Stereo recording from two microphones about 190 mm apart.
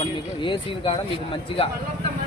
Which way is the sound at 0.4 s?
25° left (ahead or behind).